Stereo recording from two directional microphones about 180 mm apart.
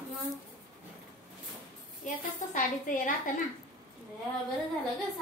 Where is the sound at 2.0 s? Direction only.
45° left (ahead or behind).